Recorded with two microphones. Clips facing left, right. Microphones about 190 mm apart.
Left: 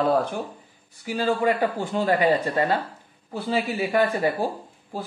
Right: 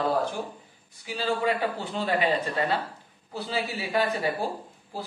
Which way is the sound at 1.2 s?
50° left (ahead or behind).